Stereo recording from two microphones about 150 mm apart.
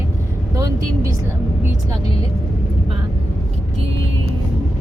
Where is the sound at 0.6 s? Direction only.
25° right (ahead or behind).